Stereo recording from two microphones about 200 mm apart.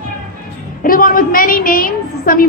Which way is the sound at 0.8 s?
45° left (ahead or behind).